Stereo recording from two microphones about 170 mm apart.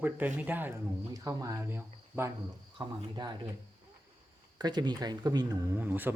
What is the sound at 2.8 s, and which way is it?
Speech, 25° right (ahead or behind).